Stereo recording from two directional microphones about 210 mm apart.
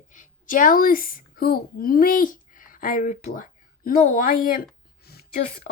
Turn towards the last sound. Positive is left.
turn(degrees=45)  # may be behind; listen again after turning